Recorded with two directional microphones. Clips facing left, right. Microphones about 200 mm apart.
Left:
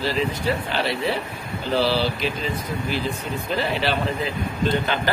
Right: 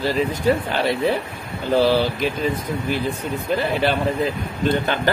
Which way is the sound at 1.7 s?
50° right (ahead or behind).